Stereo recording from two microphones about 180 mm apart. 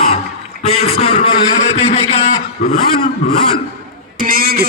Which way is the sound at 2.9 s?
60° left (ahead or behind).